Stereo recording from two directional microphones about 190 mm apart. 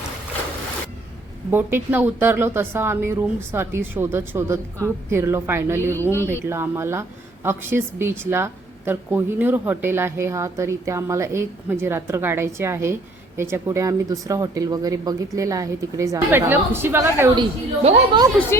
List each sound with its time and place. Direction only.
1.5 s speech: 10° right (ahead or behind)
6.0 s speech: 10° left (ahead or behind)
6.5 s speech: 15° right (ahead or behind)
17.8 s a woman's voice: 25° right (ahead or behind)